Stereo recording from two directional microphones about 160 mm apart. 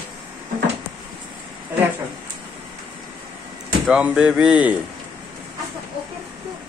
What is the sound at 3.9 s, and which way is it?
Speech, 5° right (ahead or behind).